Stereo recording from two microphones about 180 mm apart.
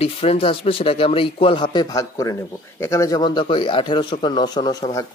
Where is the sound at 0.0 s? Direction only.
30° left (ahead or behind).